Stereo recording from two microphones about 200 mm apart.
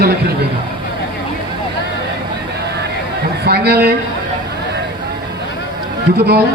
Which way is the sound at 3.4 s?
55° right (ahead or behind).